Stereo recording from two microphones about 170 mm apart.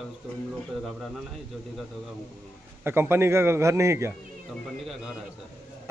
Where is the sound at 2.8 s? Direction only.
15° right (ahead or behind).